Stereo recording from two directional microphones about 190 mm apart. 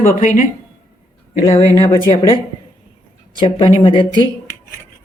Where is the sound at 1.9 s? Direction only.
30° left (ahead or behind).